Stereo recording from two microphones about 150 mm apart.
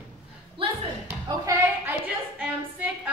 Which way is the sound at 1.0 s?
10° right (ahead or behind).